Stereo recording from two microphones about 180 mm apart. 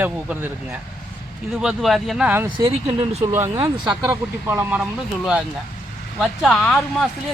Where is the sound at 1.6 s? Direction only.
Centre (ahead or behind).